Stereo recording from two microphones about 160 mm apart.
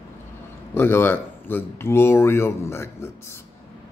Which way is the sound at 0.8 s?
15° left (ahead or behind).